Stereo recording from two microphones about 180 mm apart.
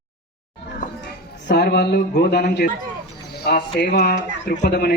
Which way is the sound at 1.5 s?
65° left (ahead or behind).